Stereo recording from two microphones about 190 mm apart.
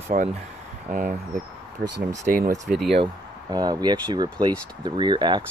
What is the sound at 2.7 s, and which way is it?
Speech, centre (ahead or behind).